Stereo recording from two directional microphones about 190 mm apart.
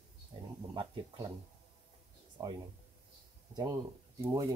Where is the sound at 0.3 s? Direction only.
25° right (ahead or behind).